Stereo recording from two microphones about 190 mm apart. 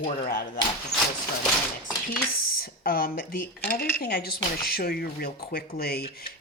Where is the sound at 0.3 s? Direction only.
50° left (ahead or behind).